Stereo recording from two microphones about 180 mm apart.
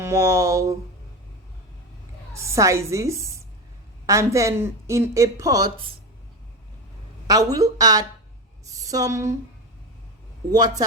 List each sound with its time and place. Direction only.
0.0 s speech: 15° right (ahead or behind)
2.3 s speech: 15° right (ahead or behind)
7.3 s a woman's voice: 20° right (ahead or behind)
10.5 s a woman's voice: 20° right (ahead or behind)